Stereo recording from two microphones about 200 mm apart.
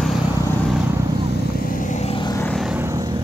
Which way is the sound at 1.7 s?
40° left (ahead or behind).